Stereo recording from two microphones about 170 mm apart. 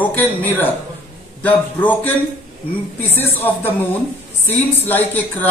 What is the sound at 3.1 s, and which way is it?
A man's voice, 10° left (ahead or behind).